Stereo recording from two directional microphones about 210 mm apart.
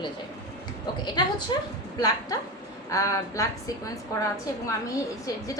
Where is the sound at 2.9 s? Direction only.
15° left (ahead or behind).